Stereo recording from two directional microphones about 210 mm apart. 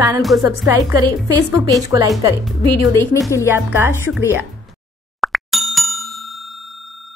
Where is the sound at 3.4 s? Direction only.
10° right (ahead or behind).